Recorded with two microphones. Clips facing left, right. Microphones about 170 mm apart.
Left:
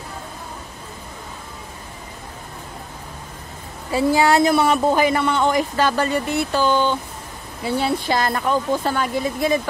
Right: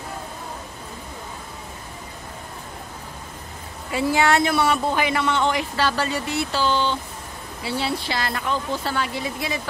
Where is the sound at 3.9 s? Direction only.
35° left (ahead or behind).